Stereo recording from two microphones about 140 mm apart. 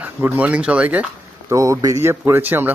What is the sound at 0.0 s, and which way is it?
Speech, 15° right (ahead or behind).